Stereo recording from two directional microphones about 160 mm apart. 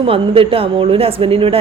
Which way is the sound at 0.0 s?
35° right (ahead or behind).